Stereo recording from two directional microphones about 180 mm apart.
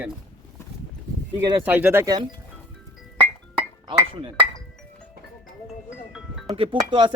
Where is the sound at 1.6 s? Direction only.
10° right (ahead or behind).